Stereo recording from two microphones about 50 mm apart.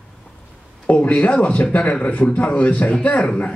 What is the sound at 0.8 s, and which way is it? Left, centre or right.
A man's voice, left.